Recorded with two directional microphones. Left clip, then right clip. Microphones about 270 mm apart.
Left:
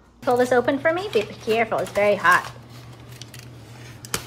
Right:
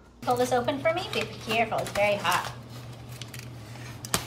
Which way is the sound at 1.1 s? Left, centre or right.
Left.